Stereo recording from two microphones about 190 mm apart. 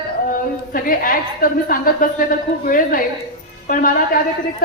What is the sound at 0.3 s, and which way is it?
A woman's voice, 45° left (ahead or behind).